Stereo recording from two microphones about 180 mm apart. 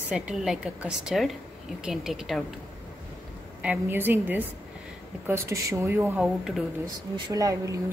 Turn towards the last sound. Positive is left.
turn(degrees=-20)  # may be behind; listen again after turning